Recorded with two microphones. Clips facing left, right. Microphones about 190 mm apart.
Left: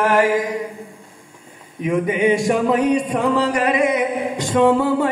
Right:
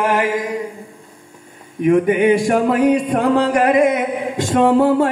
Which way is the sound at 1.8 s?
50° right (ahead or behind).